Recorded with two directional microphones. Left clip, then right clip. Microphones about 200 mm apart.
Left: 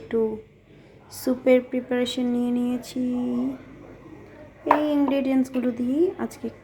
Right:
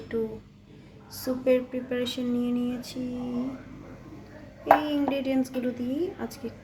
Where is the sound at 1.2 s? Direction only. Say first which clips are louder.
Left 5 dB; 20° left (ahead or behind).